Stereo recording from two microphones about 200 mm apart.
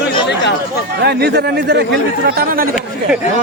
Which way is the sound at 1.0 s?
55° right (ahead or behind).